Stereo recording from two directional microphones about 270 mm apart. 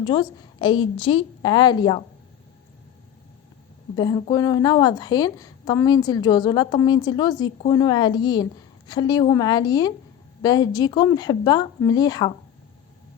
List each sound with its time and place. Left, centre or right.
0.0 s a woman's voice: centre
3.9 s a woman's voice: centre